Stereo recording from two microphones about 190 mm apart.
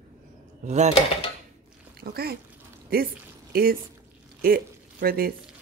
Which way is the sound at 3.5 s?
50° right (ahead or behind).